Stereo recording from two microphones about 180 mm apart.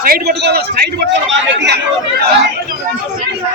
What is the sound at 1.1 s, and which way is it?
Speech, 85° right.